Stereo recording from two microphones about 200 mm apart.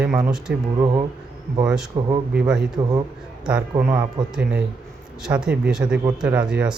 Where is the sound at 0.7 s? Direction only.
20° right (ahead or behind).